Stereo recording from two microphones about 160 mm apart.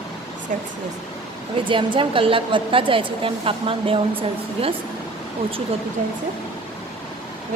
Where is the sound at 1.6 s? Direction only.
30° right (ahead or behind).